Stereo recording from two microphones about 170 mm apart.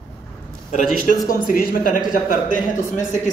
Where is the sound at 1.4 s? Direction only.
60° left (ahead or behind).